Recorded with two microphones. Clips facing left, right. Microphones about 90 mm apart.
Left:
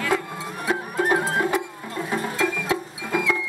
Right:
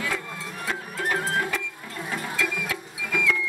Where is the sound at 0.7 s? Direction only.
25° left (ahead or behind).